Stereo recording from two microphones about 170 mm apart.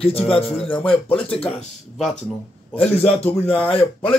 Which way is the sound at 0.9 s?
30° left (ahead or behind).